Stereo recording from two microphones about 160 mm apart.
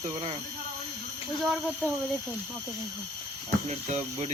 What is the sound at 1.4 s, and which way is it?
Speech, centre (ahead or behind).